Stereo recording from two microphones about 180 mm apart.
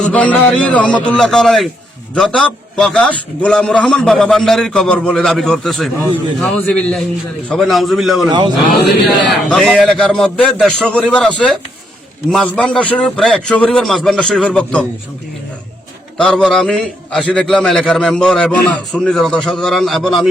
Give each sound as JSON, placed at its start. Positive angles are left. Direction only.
{"t": 0.0, "sound": "a man's voice", "side_deg": 10}
{"t": 8.3, "sound": "a man's voice", "side_deg": -25}
{"t": 9.5, "sound": "a man's voice", "side_deg": 0}
{"t": 16.1, "sound": "a man's voice", "side_deg": 0}